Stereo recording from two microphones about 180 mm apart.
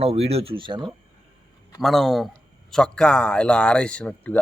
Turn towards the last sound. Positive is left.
turn(degrees=10)  # may be behind; listen again after turning